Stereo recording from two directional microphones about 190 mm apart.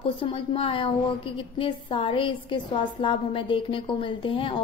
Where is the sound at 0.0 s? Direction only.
30° left (ahead or behind).